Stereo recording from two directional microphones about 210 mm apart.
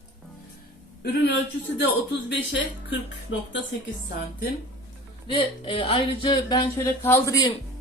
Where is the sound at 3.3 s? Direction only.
70° left (ahead or behind).